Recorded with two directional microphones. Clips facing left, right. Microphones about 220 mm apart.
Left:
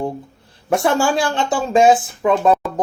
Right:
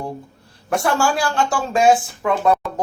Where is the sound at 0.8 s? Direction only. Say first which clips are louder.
Left 2 dB; 20° left (ahead or behind).